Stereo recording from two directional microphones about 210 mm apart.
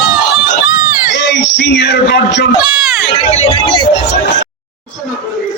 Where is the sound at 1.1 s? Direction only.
60° left (ahead or behind).